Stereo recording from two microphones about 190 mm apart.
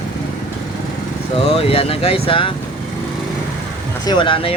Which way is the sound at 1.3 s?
30° left (ahead or behind).